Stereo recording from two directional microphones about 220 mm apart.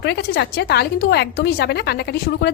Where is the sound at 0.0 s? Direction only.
50° left (ahead or behind).